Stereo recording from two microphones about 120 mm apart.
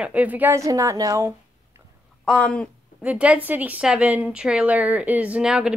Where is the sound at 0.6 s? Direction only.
25° right (ahead or behind).